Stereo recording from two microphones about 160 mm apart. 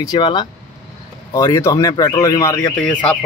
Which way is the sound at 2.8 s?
5° left (ahead or behind).